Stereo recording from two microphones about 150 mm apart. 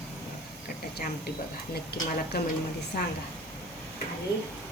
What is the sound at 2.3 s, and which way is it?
Speech, 90° left.